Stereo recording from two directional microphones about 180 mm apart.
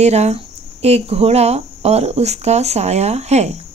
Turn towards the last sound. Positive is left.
turn(degrees=-35)  # may be behind; listen again after turning